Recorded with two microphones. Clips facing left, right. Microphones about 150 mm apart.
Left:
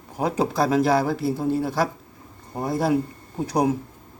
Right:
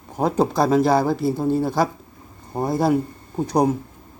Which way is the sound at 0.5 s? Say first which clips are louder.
Right 2 dB; centre (ahead or behind).